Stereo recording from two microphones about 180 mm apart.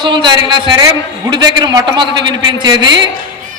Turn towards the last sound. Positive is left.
turn(degrees=-25)  # may be behind; listen again after turning